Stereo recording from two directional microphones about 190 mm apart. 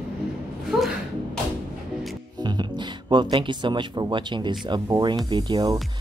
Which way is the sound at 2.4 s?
20° right (ahead or behind).